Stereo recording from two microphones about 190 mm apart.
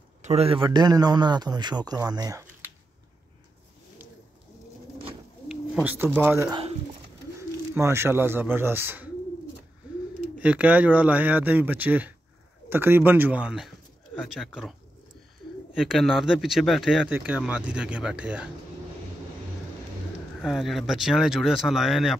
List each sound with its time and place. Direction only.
0.2 s a man's voice: 35° right (ahead or behind); by 2.7 s 15° right (ahead or behind)
5.5 s bird: 5° right (ahead or behind)
6.1 s a man's voice: 10° right (ahead or behind)
7.7 s a man's voice: 15° right (ahead or behind)
10.4 s a man's voice: 5° right (ahead or behind)
20.4 s speech: centre (ahead or behind)